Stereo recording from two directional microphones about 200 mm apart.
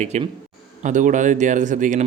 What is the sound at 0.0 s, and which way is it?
Speech, 35° right (ahead or behind).